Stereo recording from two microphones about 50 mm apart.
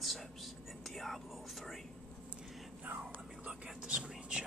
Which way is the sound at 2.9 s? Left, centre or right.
Right.